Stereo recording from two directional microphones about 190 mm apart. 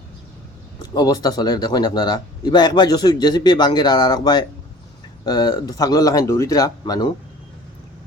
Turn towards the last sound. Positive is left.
turn(degrees=20)  # may be behind; listen again after turning